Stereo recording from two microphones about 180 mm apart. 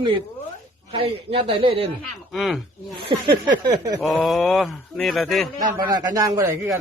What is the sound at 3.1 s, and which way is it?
Speech, 25° right (ahead or behind).